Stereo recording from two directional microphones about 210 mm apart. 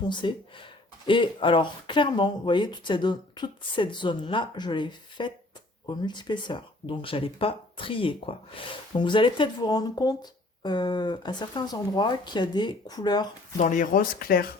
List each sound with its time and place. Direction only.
0.1 s speech: 25° left (ahead or behind)
13.6 s speech: 35° left (ahead or behind)